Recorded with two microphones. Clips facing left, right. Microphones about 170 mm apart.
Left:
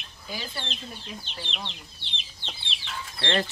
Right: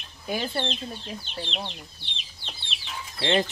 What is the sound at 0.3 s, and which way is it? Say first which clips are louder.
Speech: right 8 dB; 55° right (ahead or behind).